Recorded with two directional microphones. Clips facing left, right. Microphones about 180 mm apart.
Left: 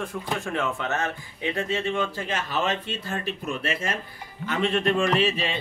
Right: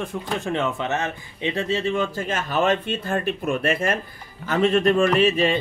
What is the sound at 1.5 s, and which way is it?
Mantra, 30° right (ahead or behind).